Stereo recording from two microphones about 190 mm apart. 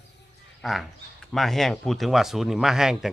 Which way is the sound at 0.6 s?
Centre (ahead or behind).